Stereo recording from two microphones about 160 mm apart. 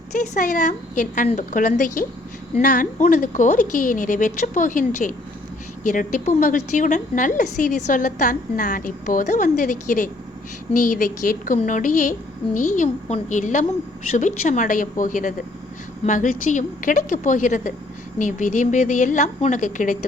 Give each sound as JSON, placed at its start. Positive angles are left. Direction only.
{"t": 0.1, "sound": "a woman's voice", "side_deg": 55}